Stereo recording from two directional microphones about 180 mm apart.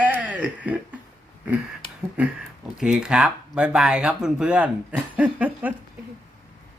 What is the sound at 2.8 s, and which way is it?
Speech, 5° right (ahead or behind).